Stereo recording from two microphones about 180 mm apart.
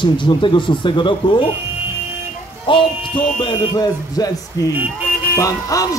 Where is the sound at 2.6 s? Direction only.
25° left (ahead or behind).